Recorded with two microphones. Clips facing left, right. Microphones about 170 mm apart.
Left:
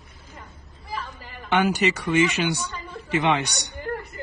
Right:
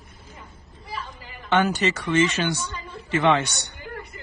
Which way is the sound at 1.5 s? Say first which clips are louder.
Even; 15° left (ahead or behind).